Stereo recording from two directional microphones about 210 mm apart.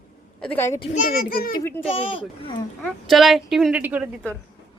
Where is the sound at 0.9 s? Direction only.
45° left (ahead or behind).